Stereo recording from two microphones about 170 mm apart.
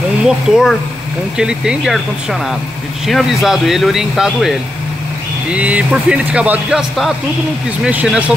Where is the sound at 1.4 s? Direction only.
5° right (ahead or behind).